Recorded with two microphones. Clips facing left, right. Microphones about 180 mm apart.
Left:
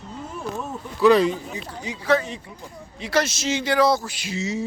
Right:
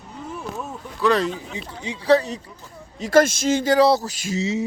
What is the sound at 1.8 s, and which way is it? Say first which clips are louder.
Speech: right 4 dB; 30° right (ahead or behind).